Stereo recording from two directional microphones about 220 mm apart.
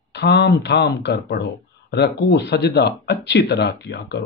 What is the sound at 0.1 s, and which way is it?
Speech, 50° left (ahead or behind).